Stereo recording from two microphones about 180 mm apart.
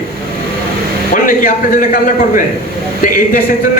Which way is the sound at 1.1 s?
50° left (ahead or behind).